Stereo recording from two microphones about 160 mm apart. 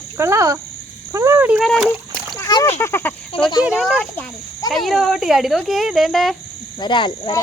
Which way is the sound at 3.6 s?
5° right (ahead or behind).